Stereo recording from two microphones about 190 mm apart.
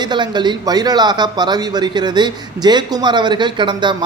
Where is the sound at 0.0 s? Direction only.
25° right (ahead or behind).